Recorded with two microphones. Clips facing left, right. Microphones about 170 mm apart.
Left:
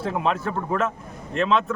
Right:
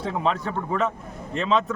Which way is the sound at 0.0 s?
5° left (ahead or behind).